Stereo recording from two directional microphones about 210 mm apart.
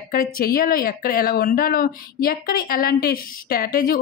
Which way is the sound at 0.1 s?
45° left (ahead or behind).